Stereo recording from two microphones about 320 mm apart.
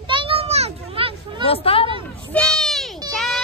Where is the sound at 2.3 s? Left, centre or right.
Centre.